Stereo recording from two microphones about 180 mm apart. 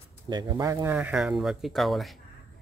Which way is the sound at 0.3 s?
20° right (ahead or behind).